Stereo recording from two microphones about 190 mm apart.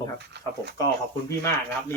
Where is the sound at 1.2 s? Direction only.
15° left (ahead or behind).